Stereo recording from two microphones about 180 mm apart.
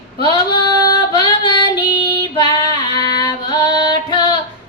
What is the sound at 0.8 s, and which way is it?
Female singing, 20° left (ahead or behind).